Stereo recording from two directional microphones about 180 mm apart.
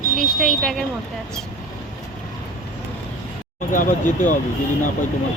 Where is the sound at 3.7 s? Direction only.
45° left (ahead or behind).